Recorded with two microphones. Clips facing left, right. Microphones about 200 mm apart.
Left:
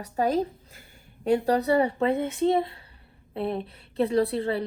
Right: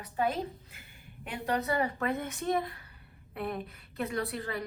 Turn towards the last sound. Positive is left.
turn(degrees=30)  # may be behind; listen again after turning